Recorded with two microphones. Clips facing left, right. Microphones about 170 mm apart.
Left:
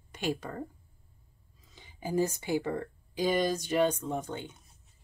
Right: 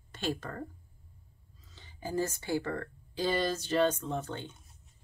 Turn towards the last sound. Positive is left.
turn(degrees=15)  # may be behind; listen again after turning